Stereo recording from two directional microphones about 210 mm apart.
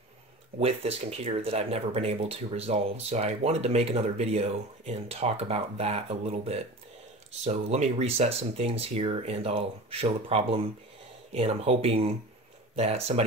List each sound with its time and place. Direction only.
0.6 s speech: 30° right (ahead or behind)